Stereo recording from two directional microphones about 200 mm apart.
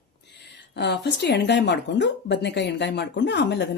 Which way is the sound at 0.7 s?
60° left (ahead or behind).